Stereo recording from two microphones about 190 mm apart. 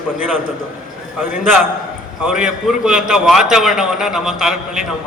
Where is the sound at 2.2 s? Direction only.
5° right (ahead or behind).